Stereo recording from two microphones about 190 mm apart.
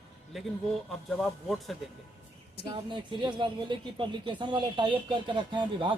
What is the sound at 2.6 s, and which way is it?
Speech, 25° right (ahead or behind).